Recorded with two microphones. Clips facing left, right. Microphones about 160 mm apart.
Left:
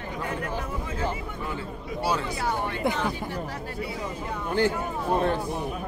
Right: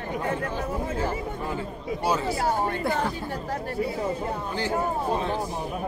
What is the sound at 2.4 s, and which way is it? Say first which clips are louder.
A man's voice: right 2 dB; 45° right (ahead or behind).